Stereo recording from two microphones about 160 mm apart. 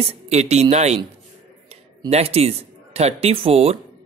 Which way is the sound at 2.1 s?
40° right (ahead or behind).